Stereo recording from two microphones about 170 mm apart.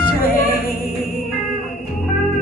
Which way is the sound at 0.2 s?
60° left (ahead or behind).